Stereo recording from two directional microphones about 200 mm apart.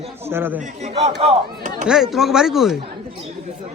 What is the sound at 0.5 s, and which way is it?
Speech, 35° right (ahead or behind).